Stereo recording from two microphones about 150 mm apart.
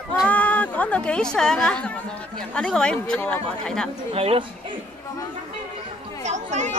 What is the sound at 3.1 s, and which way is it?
Speech, 15° left (ahead or behind).